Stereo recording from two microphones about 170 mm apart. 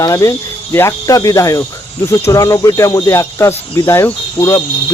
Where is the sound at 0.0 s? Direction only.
20° left (ahead or behind).